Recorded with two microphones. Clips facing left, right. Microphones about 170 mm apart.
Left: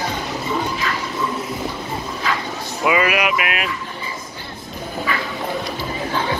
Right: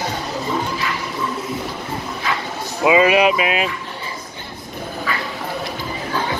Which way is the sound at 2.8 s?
20° right (ahead or behind).